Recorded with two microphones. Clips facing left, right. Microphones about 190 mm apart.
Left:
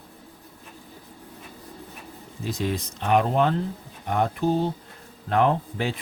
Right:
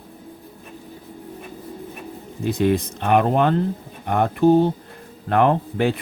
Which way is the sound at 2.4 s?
60° right (ahead or behind).